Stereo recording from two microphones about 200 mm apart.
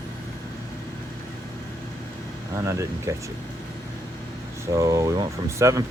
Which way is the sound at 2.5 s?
15° right (ahead or behind).